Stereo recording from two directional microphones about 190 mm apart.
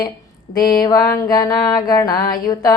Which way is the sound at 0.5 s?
20° left (ahead or behind).